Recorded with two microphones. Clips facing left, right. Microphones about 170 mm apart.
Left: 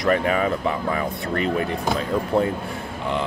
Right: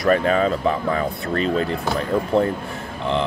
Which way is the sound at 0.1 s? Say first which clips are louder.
Right 3 dB; 15° left (ahead or behind).